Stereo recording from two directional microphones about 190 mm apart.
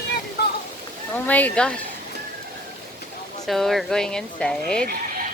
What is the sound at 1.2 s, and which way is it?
Speech, 10° left (ahead or behind).